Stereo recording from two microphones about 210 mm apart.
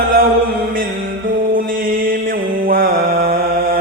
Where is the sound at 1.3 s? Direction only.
40° right (ahead or behind).